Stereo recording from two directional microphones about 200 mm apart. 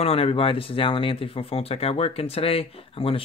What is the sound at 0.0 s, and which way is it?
Speech, 30° left (ahead or behind).